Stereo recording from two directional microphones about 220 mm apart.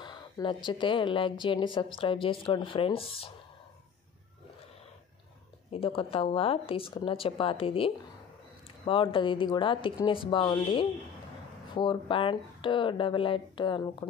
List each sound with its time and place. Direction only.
0.0 s a sound: 20° left (ahead or behind)
0.7 s speech: 20° left (ahead or behind)
5.7 s speech: 25° left (ahead or behind)